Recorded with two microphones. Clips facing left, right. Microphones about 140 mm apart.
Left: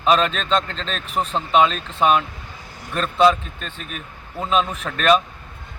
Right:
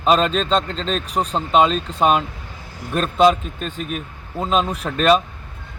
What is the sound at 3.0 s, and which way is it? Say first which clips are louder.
Speech: right 1 dB; 15° right (ahead or behind).